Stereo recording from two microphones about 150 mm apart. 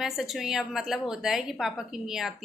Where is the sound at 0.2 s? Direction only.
Centre (ahead or behind).